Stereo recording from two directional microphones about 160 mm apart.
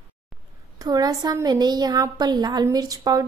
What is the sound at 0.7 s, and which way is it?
A woman's voice, 25° right (ahead or behind).